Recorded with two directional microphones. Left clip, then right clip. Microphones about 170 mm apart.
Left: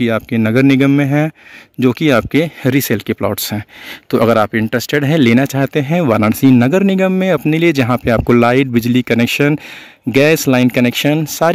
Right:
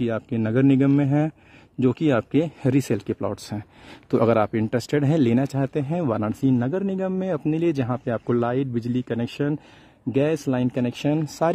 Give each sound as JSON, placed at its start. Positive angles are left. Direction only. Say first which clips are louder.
{"t": 0.0, "sound": "speech", "louder": "left 10 dB", "side_deg": 15}